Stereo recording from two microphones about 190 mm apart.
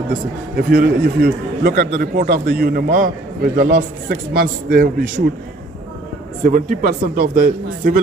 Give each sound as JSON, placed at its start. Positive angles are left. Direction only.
{"t": 0.6, "sound": "a man's voice", "side_deg": -55}
{"t": 6.4, "sound": "a man's voice", "side_deg": -40}